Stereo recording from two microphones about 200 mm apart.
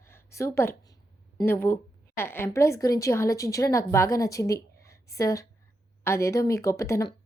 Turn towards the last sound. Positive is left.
turn(degrees=15)  # may be behind; listen again after turning